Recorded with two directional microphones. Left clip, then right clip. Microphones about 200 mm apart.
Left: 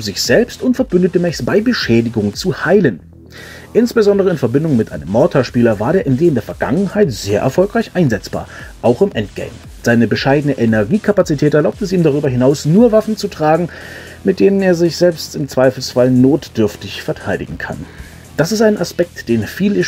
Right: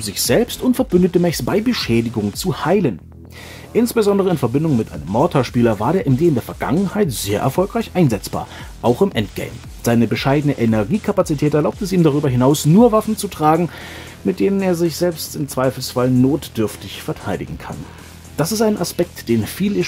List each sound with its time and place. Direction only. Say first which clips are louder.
0.0 s speech: left 4 dB; 5° right (ahead or behind)
3.9 s speech: left 4 dB; 5° right (ahead or behind)
8.8 s speech: left 3 dB; 15° right (ahead or behind)